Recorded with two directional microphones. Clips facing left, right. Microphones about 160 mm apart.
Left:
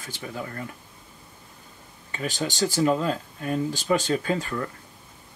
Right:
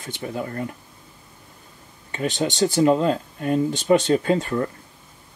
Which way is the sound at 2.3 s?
20° right (ahead or behind).